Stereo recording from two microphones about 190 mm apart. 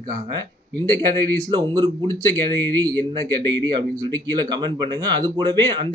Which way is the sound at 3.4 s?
20° right (ahead or behind).